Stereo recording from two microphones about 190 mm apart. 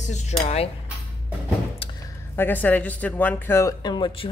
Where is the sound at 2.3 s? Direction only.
10° left (ahead or behind); by 4.3 s 25° left (ahead or behind).